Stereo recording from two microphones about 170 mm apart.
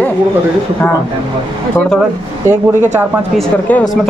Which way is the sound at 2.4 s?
15° right (ahead or behind).